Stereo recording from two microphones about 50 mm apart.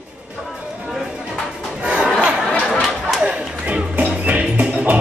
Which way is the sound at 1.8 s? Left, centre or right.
Right.